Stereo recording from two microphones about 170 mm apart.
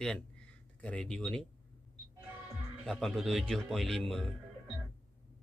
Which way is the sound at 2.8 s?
Centre (ahead or behind).